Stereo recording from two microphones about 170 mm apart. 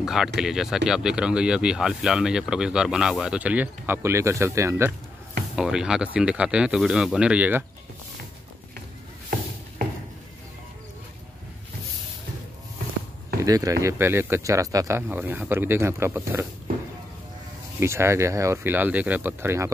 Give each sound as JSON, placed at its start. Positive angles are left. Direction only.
{"t": 0.0, "sound": "speech", "side_deg": 0}
{"t": 5.6, "sound": "speech", "side_deg": -5}
{"t": 13.4, "sound": "speech", "side_deg": -20}
{"t": 17.7, "sound": "speech", "side_deg": -15}